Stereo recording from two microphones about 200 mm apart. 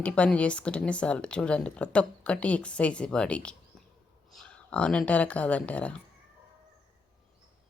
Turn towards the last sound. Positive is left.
turn(degrees=5)  # may be behind; listen again after turning